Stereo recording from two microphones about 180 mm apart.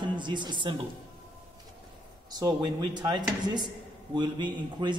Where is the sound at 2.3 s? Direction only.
20° right (ahead or behind).